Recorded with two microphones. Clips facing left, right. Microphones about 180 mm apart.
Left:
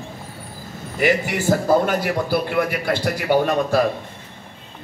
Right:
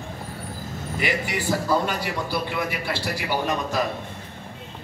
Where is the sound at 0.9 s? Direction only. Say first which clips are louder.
Left 7 dB; 50° left (ahead or behind).